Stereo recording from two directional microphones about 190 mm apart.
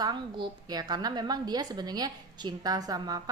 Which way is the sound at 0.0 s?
25° right (ahead or behind).